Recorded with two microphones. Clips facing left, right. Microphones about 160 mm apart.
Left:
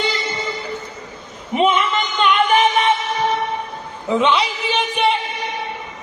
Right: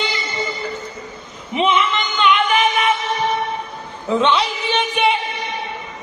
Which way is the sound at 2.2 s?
40° left (ahead or behind).